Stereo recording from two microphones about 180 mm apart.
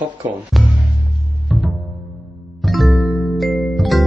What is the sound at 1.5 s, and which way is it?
Music, centre (ahead or behind).